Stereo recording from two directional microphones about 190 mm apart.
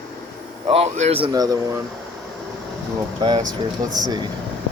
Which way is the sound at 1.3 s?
20° right (ahead or behind).